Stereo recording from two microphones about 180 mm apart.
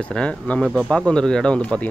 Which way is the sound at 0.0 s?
5° left (ahead or behind).